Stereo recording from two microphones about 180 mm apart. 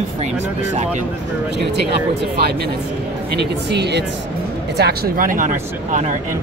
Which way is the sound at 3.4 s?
70° right (ahead or behind).